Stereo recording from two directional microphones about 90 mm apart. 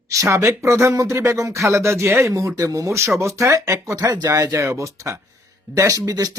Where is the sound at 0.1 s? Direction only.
35° right (ahead or behind).